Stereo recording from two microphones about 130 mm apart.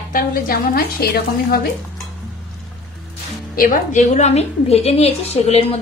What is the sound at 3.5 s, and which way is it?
A woman's voice, 85° left.